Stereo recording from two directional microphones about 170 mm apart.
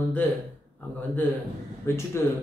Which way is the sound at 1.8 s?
15° left (ahead or behind).